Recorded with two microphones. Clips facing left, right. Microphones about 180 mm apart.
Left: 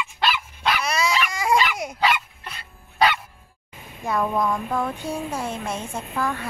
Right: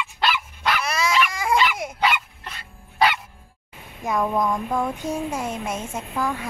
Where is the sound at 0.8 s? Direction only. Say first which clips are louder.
Right 1 dB; centre (ahead or behind).